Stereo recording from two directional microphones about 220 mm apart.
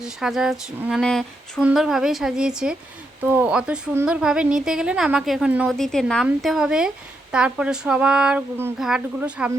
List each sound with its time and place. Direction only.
0.0 s speech: centre (ahead or behind)